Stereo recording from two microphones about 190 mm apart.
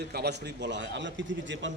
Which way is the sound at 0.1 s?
60° right (ahead or behind).